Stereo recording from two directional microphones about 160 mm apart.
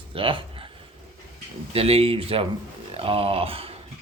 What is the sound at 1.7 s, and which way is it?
Speech, 40° right (ahead or behind).